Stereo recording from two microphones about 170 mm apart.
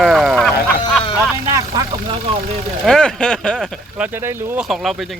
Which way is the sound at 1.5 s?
20° right (ahead or behind).